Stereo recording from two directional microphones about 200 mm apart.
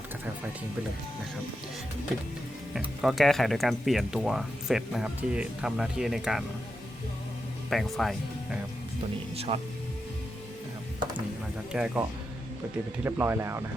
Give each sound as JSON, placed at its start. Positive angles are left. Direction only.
{"t": 2.7, "sound": "speech", "side_deg": 0}
{"t": 7.7, "sound": "speech", "side_deg": 0}
{"t": 9.3, "sound": "speech", "side_deg": -30}
{"t": 11.7, "sound": "speech", "side_deg": -5}
{"t": 13.1, "sound": "speech", "side_deg": -10}